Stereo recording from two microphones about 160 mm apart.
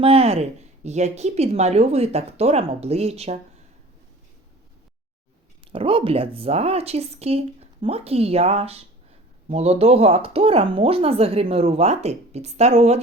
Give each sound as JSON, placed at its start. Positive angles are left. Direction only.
{"t": 0.0, "sound": "speech", "side_deg": -35}
{"t": 5.7, "sound": "speech", "side_deg": -35}